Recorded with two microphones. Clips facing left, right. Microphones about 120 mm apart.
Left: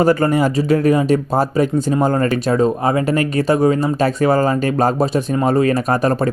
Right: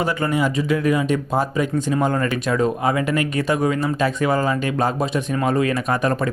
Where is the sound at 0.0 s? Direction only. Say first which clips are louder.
Left 6 dB; 40° left (ahead or behind).